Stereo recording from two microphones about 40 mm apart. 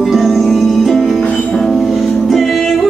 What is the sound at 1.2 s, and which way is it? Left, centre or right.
Music, left.